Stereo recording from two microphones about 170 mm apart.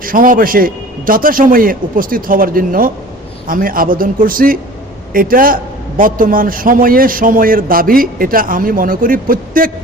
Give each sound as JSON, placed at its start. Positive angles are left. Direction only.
{"t": 0.0, "sound": "a man's voice", "side_deg": -55}